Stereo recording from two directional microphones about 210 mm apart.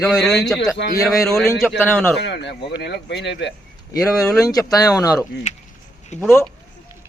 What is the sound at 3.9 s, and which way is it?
Speech, 15° left (ahead or behind).